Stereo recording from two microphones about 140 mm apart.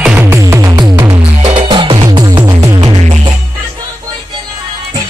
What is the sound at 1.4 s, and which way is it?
Music, 35° right (ahead or behind).